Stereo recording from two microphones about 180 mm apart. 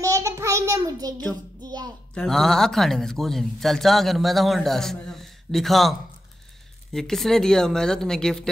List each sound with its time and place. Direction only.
0.0 s child singing: 20° right (ahead or behind)
1.6 s a sound: 20° right (ahead or behind)
2.1 s speech: 5° left (ahead or behind)